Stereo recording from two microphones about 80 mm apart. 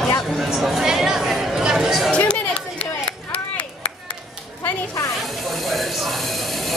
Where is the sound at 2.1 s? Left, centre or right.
Centre.